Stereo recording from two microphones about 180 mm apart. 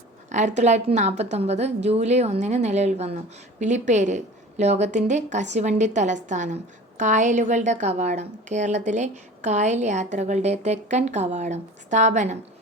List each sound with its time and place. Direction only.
0.3 s a woman's voice: 40° right (ahead or behind)